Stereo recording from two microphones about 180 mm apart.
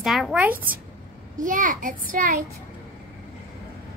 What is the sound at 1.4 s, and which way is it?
A child's voice, 45° right (ahead or behind).